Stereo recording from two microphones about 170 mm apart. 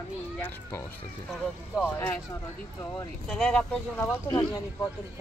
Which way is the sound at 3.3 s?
5° left (ahead or behind).